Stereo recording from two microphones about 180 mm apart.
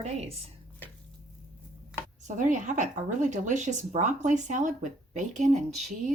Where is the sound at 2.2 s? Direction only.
40° right (ahead or behind).